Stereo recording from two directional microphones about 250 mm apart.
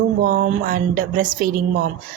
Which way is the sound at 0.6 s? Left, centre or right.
Right.